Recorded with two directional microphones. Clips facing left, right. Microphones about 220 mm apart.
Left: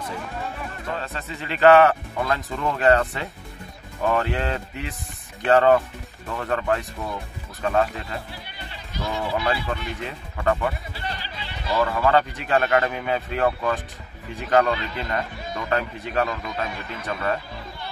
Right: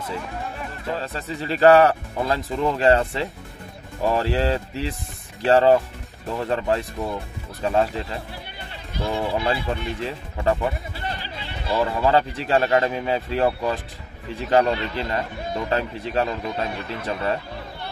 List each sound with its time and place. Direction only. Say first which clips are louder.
0.9 s speech: right 3 dB; 35° right (ahead or behind)
11.7 s speech: right 1 dB; 25° right (ahead or behind)